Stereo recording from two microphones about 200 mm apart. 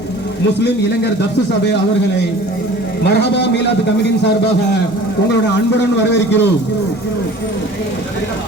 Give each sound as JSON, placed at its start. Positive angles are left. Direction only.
{"t": 3.0, "sound": "a man's voice", "side_deg": 60}
{"t": 6.0, "sound": "a man's voice", "side_deg": 60}